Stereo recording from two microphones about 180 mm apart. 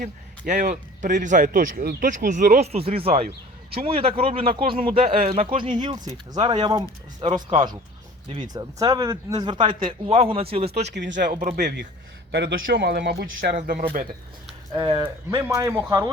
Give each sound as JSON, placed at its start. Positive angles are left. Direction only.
{"t": 0.0, "sound": "a man's voice", "side_deg": -45}
{"t": 10.8, "sound": "speech", "side_deg": -75}
{"t": 12.3, "sound": "speech", "side_deg": -75}
{"t": 13.6, "sound": "speech", "side_deg": -40}
{"t": 14.7, "sound": "a man's voice", "side_deg": -30}
{"t": 15.3, "sound": "a man's voice", "side_deg": -15}